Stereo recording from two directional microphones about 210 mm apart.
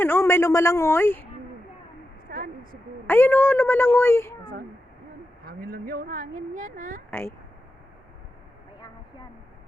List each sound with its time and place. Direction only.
0.0 s speech: 10° left (ahead or behind)
2.3 s a sound: 45° right (ahead or behind)
3.1 s speech: 10° left (ahead or behind)
5.5 s speech: 45° right (ahead or behind)
7.1 s speech: 10° left (ahead or behind)